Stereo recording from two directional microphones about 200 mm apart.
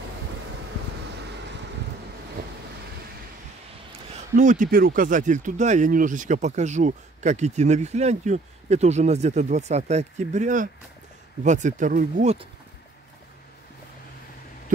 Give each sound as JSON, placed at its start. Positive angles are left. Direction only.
{"t": 4.1, "sound": "speech", "side_deg": -40}